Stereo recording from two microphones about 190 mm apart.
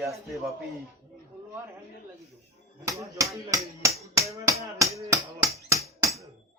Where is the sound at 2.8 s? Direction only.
15° right (ahead or behind).